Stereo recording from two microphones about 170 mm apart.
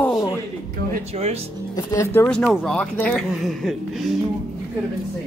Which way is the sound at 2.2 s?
5° left (ahead or behind).